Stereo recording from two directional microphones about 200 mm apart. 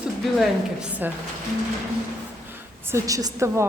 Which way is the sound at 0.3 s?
5° right (ahead or behind).